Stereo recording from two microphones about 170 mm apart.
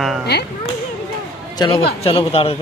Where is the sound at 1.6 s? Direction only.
30° left (ahead or behind).